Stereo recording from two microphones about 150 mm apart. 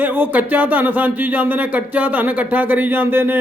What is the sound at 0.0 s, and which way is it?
A man's voice, 15° right (ahead or behind).